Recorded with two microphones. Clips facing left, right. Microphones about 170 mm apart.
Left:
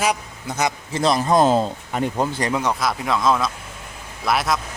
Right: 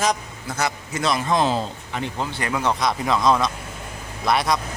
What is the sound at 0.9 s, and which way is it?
Speech, 35° left (ahead or behind).